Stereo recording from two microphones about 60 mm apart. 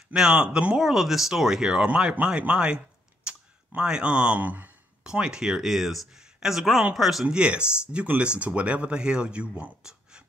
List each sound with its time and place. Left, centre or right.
0.1 s speech: centre
0.7 s speech: centre
1.9 s speech: right
5.0 s speech: centre
7.2 s speech: centre